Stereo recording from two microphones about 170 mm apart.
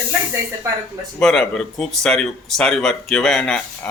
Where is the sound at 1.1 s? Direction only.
5° left (ahead or behind).